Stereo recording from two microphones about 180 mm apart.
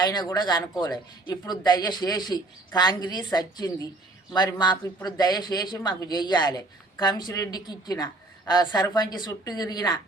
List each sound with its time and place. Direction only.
0.0 s speech: 25° left (ahead or behind)